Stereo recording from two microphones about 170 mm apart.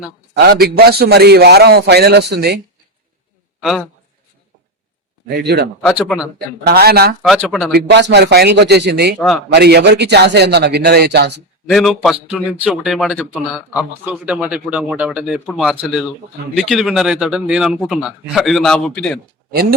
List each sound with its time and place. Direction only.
0.3 s a man's voice: 70° right (ahead or behind)
3.6 s a man's voice: centre (ahead or behind)
5.3 s a man's voice: 75° right (ahead or behind)
5.8 s speech: 5° right (ahead or behind)
6.7 s a man's voice: 65° right (ahead or behind)
7.2 s speech: 10° right (ahead or behind)
7.7 s a man's voice: 85° right
9.1 s speech: centre (ahead or behind)
9.5 s a man's voice: 75° right (ahead or behind)
11.6 s speech: centre (ahead or behind)